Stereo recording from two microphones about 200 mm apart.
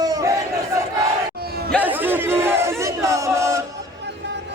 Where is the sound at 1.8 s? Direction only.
10° right (ahead or behind).